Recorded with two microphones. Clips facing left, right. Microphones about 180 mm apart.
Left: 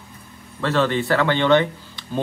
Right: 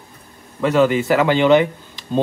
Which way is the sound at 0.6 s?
15° right (ahead or behind).